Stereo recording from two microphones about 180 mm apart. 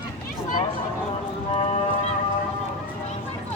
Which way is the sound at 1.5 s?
35° left (ahead or behind).